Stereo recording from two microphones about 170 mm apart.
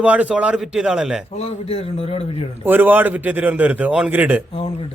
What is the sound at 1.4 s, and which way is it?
Speech, 35° left (ahead or behind).